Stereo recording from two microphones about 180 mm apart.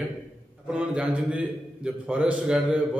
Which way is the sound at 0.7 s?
5° right (ahead or behind).